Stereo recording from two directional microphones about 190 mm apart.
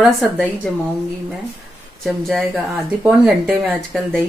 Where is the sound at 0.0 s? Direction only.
Centre (ahead or behind).